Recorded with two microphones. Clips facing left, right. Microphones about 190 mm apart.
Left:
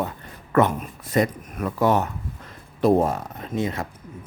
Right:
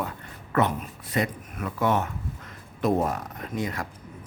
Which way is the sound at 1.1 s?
40° left (ahead or behind).